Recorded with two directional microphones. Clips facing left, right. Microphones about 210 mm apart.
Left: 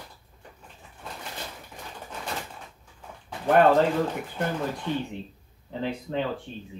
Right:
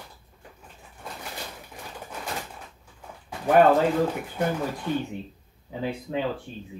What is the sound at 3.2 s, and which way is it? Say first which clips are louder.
Speech: right 1 dB; 5° right (ahead or behind).